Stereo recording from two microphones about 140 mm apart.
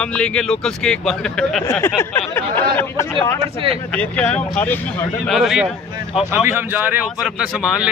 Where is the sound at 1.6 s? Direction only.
15° left (ahead or behind).